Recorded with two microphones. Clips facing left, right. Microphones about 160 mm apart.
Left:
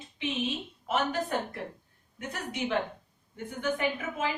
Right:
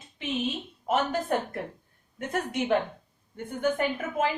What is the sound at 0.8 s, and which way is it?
A woman's voice, 50° right (ahead or behind).